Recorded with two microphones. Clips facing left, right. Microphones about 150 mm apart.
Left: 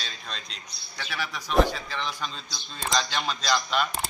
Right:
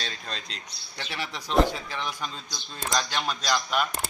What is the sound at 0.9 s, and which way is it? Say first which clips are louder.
A man's voice: left 1 dB; 25° right (ahead or behind).